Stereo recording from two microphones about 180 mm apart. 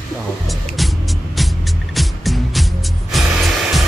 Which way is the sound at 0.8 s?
Centre (ahead or behind).